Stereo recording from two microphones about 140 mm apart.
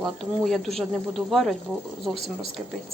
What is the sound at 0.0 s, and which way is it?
Speech, centre (ahead or behind).